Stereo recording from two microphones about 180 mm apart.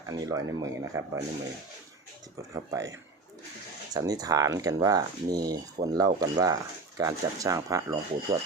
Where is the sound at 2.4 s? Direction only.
20° right (ahead or behind).